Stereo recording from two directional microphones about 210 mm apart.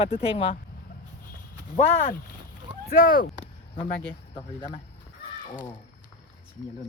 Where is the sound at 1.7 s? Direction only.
25° left (ahead or behind).